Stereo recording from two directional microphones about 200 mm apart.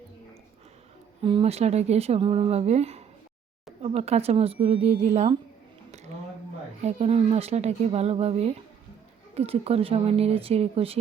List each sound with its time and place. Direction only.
1.2 s speech: 25° right (ahead or behind)
6.8 s speech: 35° right (ahead or behind)